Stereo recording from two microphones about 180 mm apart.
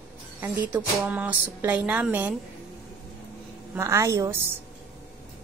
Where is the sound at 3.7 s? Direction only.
15° right (ahead or behind).